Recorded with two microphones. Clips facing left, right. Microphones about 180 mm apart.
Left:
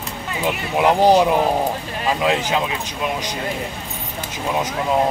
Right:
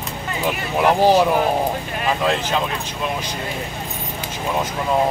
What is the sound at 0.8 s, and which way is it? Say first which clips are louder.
Speech: left 1 dB; 15° left (ahead or behind).